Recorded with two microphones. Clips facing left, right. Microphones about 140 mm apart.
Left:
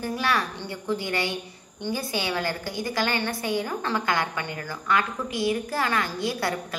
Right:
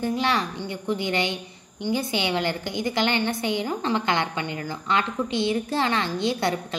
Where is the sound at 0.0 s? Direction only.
20° right (ahead or behind).